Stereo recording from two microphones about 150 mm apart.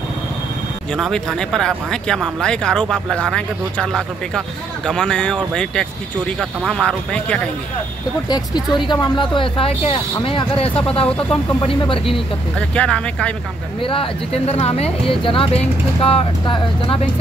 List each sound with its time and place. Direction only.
0.9 s speech: centre (ahead or behind)
8.3 s speech: 30° left (ahead or behind)
12.5 s speech: 5° left (ahead or behind)
13.7 s speech: 35° left (ahead or behind)